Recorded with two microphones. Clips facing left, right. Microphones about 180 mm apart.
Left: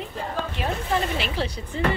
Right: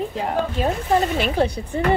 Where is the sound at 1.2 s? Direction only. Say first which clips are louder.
Right 8 dB; 50° right (ahead or behind).